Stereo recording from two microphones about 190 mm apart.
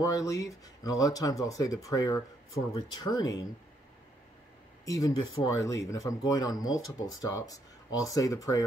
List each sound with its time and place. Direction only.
0.0 s speech: 20° left (ahead or behind)
4.8 s speech: 20° left (ahead or behind)